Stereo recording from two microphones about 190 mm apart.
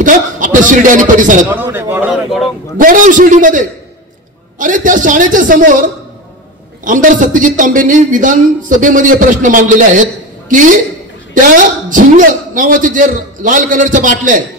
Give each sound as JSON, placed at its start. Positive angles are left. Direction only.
{"t": 0.0, "sound": "a man's voice", "side_deg": -45}
{"t": 1.5, "sound": "a sound", "side_deg": -10}
{"t": 2.8, "sound": "a man's voice", "side_deg": -45}
{"t": 11.3, "sound": "a man's voice", "side_deg": -45}